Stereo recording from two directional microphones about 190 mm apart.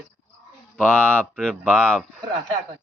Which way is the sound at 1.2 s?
5° left (ahead or behind).